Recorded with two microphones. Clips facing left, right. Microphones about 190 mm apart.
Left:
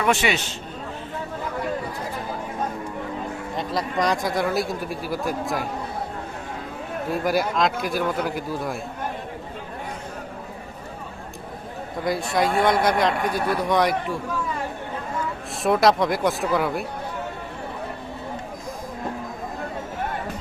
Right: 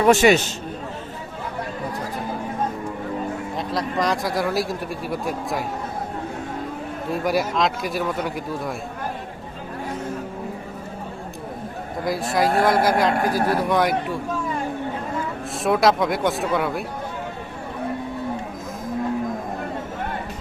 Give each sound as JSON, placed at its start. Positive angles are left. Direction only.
{"t": 0.0, "sound": "a man's voice", "side_deg": -40}
{"t": 3.5, "sound": "speech", "side_deg": 0}
{"t": 7.1, "sound": "speech", "side_deg": 0}
{"t": 12.0, "sound": "speech", "side_deg": 0}
{"t": 15.6, "sound": "speech", "side_deg": 0}